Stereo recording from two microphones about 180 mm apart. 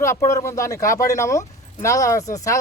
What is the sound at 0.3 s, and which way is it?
Speech, 15° left (ahead or behind).